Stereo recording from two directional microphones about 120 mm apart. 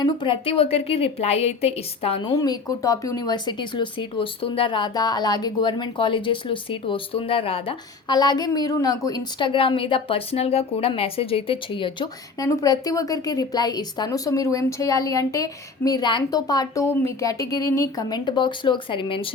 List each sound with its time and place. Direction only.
0.0 s a woman's voice: 45° left (ahead or behind)
2.3 s a woman's voice: 30° left (ahead or behind); by 7.8 s 50° left (ahead or behind)
8.0 s a woman's voice: 35° left (ahead or behind)
9.5 s a woman's voice: 45° left (ahead or behind)
12.4 s a woman's voice: 30° left (ahead or behind); by 19.3 s 45° left (ahead or behind)